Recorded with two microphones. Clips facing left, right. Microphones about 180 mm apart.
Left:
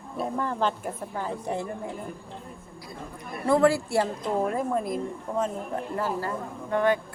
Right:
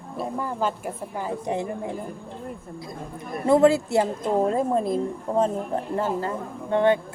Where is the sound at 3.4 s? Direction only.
20° right (ahead or behind).